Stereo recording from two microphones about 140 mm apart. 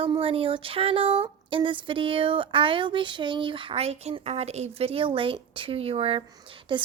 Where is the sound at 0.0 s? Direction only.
40° right (ahead or behind).